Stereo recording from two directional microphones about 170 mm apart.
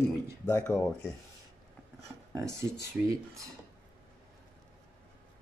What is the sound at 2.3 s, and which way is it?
Speech, 20° right (ahead or behind).